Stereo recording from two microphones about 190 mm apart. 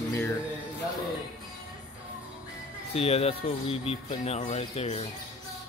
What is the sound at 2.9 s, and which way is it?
Speech, 35° left (ahead or behind).